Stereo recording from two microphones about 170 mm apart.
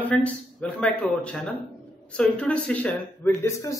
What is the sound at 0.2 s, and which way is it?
Speech, 5° left (ahead or behind).